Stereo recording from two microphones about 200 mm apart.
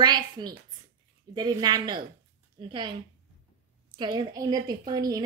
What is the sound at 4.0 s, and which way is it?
Speech, 20° right (ahead or behind).